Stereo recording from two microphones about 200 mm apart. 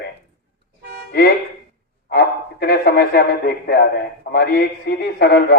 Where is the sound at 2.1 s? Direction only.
50° left (ahead or behind).